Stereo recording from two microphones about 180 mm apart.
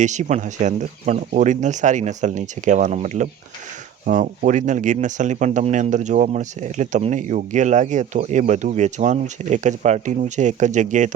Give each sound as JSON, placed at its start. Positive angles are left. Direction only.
{"t": 0.0, "sound": "speech", "side_deg": -40}